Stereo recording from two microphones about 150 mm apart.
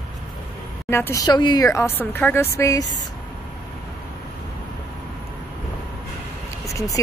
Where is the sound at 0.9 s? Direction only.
20° left (ahead or behind).